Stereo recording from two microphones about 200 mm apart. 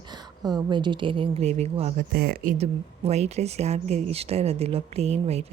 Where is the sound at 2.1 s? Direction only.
50° right (ahead or behind).